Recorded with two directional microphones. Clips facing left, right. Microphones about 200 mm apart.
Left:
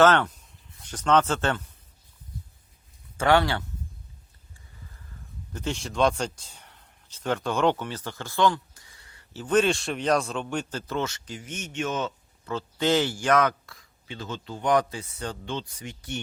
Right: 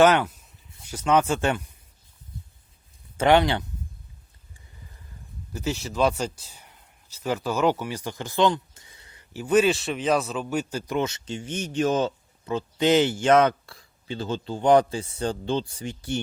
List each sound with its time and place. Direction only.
0.0 s speech: 10° right (ahead or behind)
3.2 s speech: 20° right (ahead or behind)
5.5 s speech: 5° right (ahead or behind); by 12.1 s 35° right (ahead or behind)
12.5 s speech: 15° right (ahead or behind)